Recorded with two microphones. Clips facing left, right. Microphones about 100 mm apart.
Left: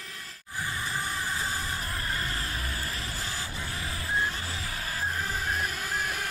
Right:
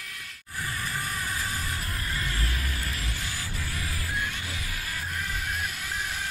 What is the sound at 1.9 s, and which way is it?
Vehicle, 35° left (ahead or behind).